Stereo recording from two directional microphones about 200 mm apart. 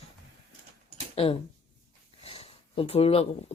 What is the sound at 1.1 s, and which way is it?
Speech, 30° left (ahead or behind).